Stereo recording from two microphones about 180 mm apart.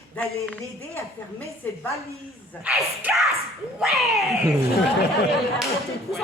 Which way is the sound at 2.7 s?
5° right (ahead or behind).